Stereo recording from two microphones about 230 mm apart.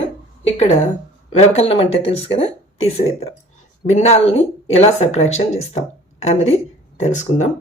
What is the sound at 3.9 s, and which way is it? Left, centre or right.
Speech, left.